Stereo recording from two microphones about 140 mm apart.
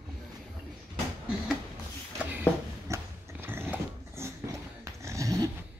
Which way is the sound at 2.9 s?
15° right (ahead or behind).